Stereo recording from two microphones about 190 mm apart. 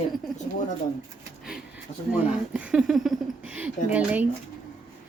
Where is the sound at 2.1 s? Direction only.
5° right (ahead or behind).